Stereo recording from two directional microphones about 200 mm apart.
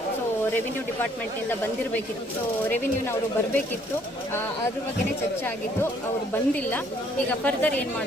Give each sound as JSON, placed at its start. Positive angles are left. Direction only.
{"t": 2.6, "sound": "speech", "side_deg": 10}
{"t": 6.3, "sound": "speech", "side_deg": 10}